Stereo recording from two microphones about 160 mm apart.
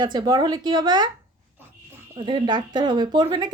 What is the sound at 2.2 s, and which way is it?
Speech, 30° right (ahead or behind).